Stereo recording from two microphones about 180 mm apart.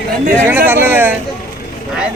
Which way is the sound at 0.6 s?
10° right (ahead or behind).